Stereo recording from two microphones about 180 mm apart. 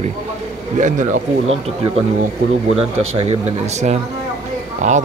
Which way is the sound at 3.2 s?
35° right (ahead or behind).